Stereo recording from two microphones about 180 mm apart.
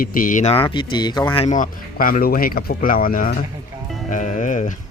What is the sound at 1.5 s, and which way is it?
Speech, 50° left (ahead or behind).